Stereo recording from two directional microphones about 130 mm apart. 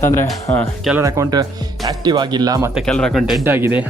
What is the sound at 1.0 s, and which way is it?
Speech, 25° right (ahead or behind).